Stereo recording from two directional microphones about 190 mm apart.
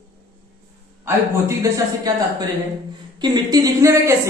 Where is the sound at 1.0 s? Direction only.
15° right (ahead or behind).